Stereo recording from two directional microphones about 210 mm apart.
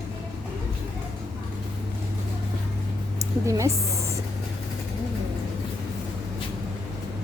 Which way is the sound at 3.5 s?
15° right (ahead or behind).